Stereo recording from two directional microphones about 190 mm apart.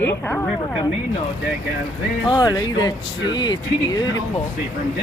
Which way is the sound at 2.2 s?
20° left (ahead or behind).